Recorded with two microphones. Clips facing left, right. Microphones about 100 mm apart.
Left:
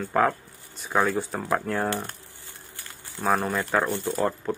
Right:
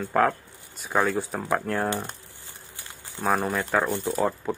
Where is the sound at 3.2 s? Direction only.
Centre (ahead or behind).